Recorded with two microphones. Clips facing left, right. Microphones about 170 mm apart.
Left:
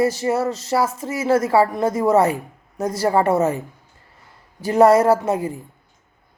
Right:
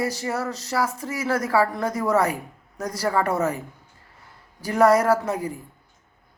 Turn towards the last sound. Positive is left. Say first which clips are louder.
# left 4 dB
turn(degrees=25)  # may be behind; listen again after turning